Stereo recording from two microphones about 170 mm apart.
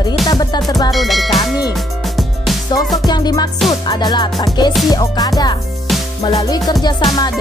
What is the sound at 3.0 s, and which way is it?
Music, 25° left (ahead or behind).